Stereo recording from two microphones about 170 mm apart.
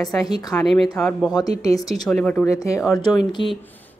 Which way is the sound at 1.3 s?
25° left (ahead or behind).